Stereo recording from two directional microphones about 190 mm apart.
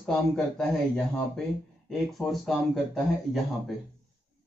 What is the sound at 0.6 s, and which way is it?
Speech, 5° left (ahead or behind).